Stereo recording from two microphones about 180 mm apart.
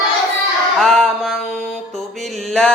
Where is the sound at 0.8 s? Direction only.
Centre (ahead or behind).